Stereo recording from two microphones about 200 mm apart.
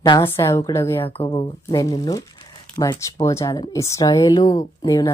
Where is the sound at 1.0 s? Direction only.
25° left (ahead or behind).